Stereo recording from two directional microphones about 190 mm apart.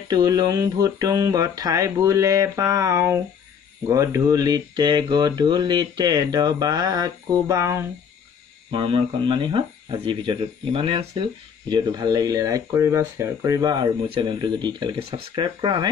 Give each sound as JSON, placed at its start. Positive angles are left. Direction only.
{"t": 0.1, "sound": "a sound", "side_deg": -20}
{"t": 3.9, "sound": "speech", "side_deg": -15}
{"t": 8.6, "sound": "speech", "side_deg": -25}